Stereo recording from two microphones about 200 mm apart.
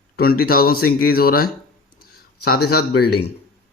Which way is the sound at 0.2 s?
50° left (ahead or behind).